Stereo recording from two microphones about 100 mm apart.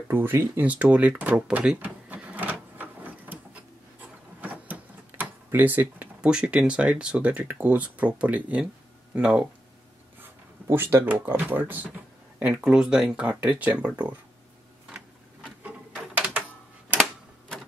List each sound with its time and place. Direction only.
0.1 s speech: 20° right (ahead or behind)
1.5 s drawer open or close: 10° right (ahead or behind)
2.5 s printer: 15° right (ahead or behind)
4.4 s speech: 15° right (ahead or behind)
10.7 s speech: 25° right (ahead or behind)
12.6 s speech: 10° right (ahead or behind)
15.4 s a sound: 10° right (ahead or behind)